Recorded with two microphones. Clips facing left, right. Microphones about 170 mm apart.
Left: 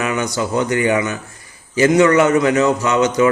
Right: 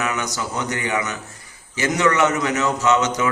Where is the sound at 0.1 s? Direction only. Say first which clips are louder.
Left 7 dB; 25° left (ahead or behind).